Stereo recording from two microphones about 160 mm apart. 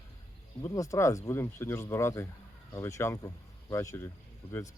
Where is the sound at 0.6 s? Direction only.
20° left (ahead or behind).